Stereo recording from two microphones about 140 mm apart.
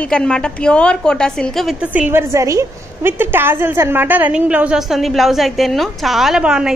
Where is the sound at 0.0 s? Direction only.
5° left (ahead or behind).